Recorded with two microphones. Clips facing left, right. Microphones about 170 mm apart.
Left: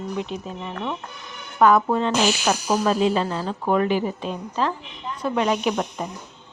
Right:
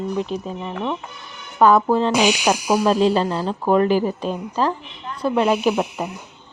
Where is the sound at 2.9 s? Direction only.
35° right (ahead or behind).